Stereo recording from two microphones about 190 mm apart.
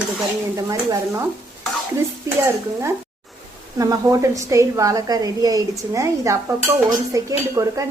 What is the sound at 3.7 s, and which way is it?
Speech, 20° right (ahead or behind).